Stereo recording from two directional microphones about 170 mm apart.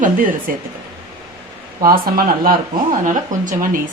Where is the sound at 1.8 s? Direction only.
60° right (ahead or behind).